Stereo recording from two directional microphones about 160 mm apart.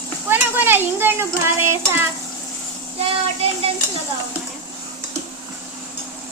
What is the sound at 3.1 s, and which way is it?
Child singing, 35° right (ahead or behind).